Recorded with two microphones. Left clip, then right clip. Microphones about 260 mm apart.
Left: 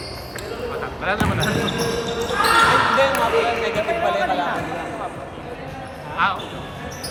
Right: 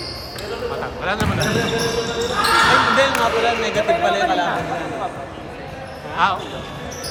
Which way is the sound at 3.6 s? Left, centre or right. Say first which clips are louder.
Right 3 dB; right.